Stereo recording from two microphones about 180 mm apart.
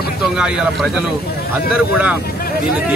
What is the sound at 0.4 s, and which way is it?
Speech, 5° right (ahead or behind).